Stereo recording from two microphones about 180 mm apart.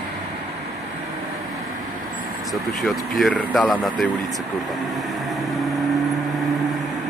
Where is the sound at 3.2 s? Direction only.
5° left (ahead or behind).